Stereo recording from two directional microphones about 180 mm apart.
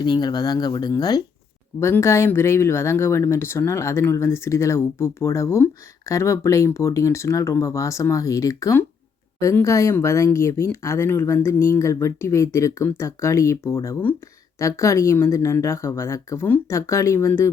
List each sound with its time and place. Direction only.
0.0 s speech: 25° left (ahead or behind)